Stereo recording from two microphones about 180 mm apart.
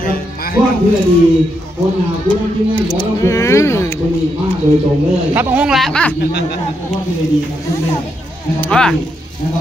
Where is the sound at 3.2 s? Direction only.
15° left (ahead or behind).